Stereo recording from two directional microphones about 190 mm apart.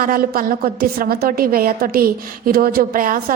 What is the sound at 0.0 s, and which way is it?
A woman's voice, 50° right (ahead or behind).